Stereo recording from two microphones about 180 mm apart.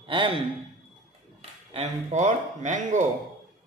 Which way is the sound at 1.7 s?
40° right (ahead or behind).